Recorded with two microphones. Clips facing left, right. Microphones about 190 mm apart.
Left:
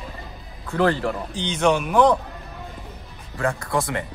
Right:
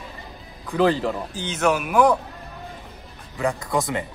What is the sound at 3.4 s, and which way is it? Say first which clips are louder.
Speech: even; 20° right (ahead or behind).